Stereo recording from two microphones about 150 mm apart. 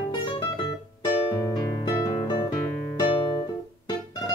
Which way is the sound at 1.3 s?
25° left (ahead or behind).